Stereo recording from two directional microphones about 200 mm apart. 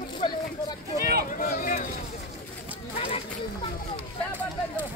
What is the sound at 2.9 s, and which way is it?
Run, 25° left (ahead or behind).